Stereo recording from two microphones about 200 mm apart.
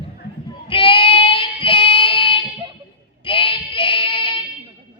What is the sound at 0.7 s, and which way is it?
Child singing, 25° left (ahead or behind).